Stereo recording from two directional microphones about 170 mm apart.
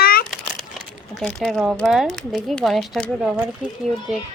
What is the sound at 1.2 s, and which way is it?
Speech, 5° left (ahead or behind).